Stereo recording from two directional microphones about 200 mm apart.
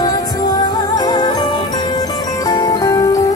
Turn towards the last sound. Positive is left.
turn(degrees=15)  # may be behind; listen again after turning